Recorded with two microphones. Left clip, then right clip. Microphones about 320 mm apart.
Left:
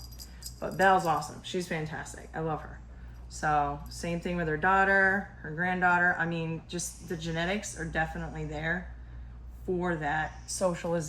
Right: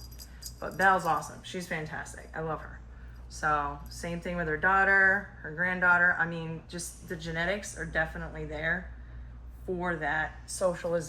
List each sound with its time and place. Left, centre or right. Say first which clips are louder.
0.6 s speech: left 1 dB; left
9.8 s speech: right 2 dB; left